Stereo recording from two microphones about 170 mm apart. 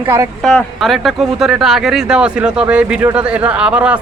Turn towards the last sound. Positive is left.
turn(degrees=-5)  # may be behind; listen again after turning